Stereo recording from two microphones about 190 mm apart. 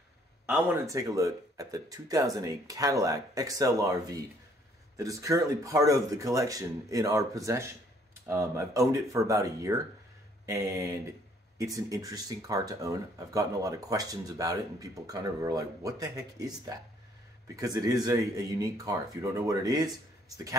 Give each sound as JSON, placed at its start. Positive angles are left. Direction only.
{"t": 0.5, "sound": "speech", "side_deg": -15}